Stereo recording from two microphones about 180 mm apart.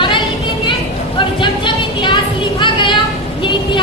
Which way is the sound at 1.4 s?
25° left (ahead or behind).